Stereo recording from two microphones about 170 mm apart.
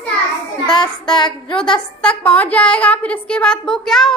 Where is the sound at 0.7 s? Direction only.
25° left (ahead or behind).